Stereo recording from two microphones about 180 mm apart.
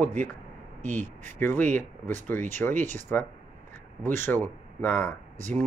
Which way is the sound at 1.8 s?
45° right (ahead or behind).